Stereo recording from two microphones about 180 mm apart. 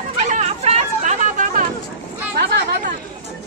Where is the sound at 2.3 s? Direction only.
70° right (ahead or behind).